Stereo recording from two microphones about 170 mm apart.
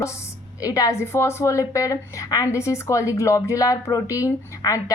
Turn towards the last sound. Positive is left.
turn(degrees=20)  # may be behind; listen again after turning